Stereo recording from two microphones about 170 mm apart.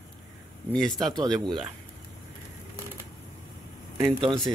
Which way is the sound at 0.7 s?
5° left (ahead or behind).